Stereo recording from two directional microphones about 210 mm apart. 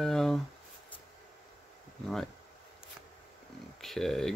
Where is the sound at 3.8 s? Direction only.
Centre (ahead or behind).